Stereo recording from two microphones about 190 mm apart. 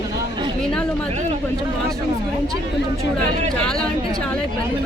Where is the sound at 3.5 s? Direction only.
5° left (ahead or behind).